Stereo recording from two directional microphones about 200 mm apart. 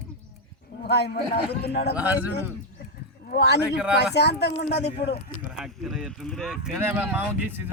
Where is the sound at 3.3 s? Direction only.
55° left (ahead or behind).